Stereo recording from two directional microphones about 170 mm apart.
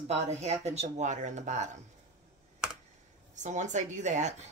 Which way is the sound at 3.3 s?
45° right (ahead or behind).